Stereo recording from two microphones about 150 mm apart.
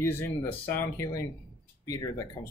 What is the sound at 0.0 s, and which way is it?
Speech, 15° left (ahead or behind).